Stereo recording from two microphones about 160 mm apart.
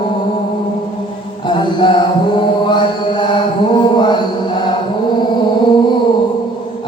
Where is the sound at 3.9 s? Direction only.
30° left (ahead or behind).